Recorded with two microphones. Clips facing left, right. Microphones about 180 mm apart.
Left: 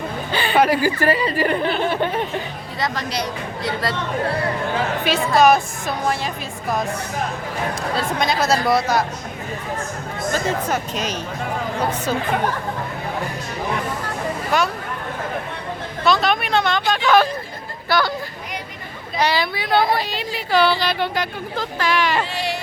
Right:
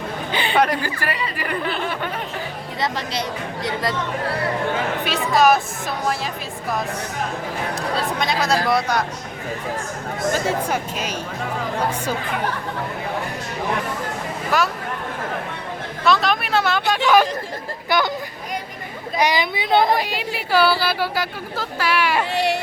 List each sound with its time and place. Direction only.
0.3 s a sound: 20° right (ahead or behind)
0.5 s speech: 5° left (ahead or behind)
0.9 s speech: 30° left (ahead or behind)
1.9 s music: 25° left (ahead or behind)
2.8 s speech: 25° right (ahead or behind)
5.0 s speech: centre (ahead or behind)
7.8 s speech: centre (ahead or behind)
10.3 s speech: 10° right (ahead or behind)
14.5 s speech: centre (ahead or behind)
16.0 s speech: centre (ahead or behind); by 18.1 s 20° right (ahead or behind)
19.2 s speech: 15° right (ahead or behind)
22.3 s a sound: 65° right (ahead or behind)